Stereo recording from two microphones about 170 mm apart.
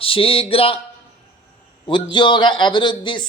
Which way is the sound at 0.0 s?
35° left (ahead or behind).